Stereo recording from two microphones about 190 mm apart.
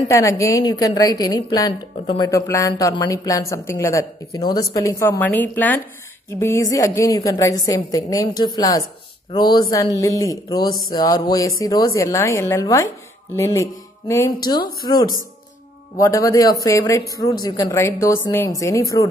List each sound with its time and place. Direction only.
0.1 s a woman's voice: 15° left (ahead or behind)
16.0 s a woman's voice: 15° left (ahead or behind)